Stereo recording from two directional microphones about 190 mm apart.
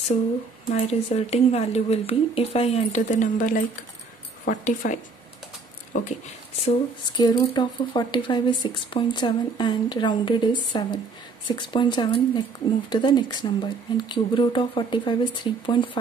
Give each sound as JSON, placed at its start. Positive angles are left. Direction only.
{"t": 0.8, "sound": "speech", "side_deg": 35}
{"t": 5.9, "sound": "speech", "side_deg": 40}
{"t": 6.6, "sound": "speech", "side_deg": 25}